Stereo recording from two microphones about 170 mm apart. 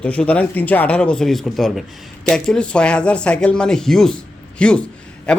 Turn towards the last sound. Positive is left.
turn(degrees=5)  # may be behind; listen again after turning